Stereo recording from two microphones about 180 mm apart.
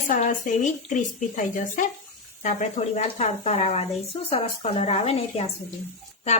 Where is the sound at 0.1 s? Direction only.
45° left (ahead or behind).